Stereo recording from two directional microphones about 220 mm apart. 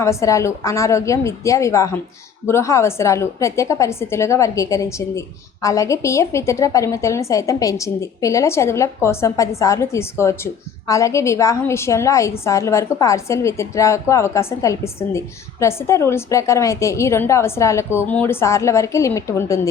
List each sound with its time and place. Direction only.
0.0 s a woman's voice: 15° left (ahead or behind)